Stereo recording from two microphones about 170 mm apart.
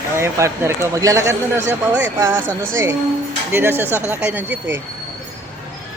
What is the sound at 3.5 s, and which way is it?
Speech, 15° right (ahead or behind).